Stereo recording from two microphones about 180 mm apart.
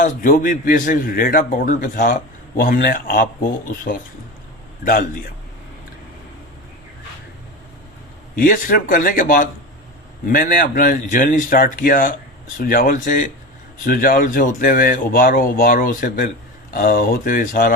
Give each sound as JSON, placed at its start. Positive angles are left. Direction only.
{"t": 0.0, "sound": "speech", "side_deg": 50}
{"t": 8.4, "sound": "speech", "side_deg": 50}